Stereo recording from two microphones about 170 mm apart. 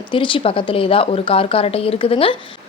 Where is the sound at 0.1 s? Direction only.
30° left (ahead or behind).